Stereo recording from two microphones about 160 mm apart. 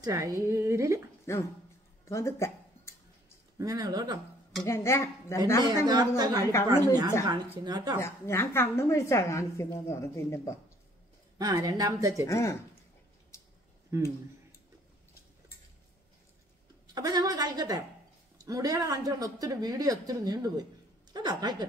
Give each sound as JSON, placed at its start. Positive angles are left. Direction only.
{"t": 0.0, "sound": "a woman's voice", "side_deg": -20}
{"t": 1.3, "sound": "a woman's voice", "side_deg": 15}
{"t": 2.0, "sound": "a sound", "side_deg": 20}
{"t": 3.5, "sound": "a woman's voice", "side_deg": -25}
{"t": 4.6, "sound": "a woman's voice", "side_deg": 15}
{"t": 5.9, "sound": "a woman's voice", "side_deg": -25}
{"t": 6.5, "sound": "a woman's voice", "side_deg": 15}
{"t": 7.6, "sound": "a woman's voice", "side_deg": -25}
{"t": 8.0, "sound": "a woman's voice", "side_deg": 15}
{"t": 11.3, "sound": "a woman's voice", "side_deg": -25}
{"t": 12.3, "sound": "a woman's voice", "side_deg": 20}
{"t": 16.8, "sound": "a woman's voice", "side_deg": -25}